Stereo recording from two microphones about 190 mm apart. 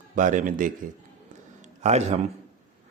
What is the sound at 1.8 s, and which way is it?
Speech, 35° right (ahead or behind).